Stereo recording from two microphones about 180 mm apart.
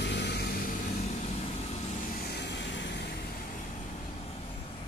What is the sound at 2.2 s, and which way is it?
Vehicle, 65° left (ahead or behind).